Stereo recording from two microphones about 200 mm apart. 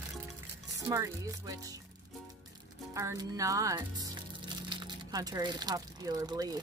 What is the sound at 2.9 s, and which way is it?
Speech, 15° right (ahead or behind).